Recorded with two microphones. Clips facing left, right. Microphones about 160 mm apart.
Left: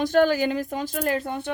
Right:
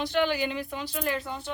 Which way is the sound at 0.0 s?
45° left (ahead or behind).